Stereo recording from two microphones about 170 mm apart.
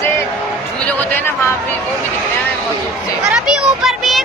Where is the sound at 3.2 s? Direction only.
5° right (ahead or behind).